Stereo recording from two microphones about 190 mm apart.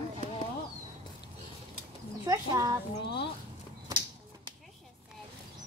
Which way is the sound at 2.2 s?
20° right (ahead or behind).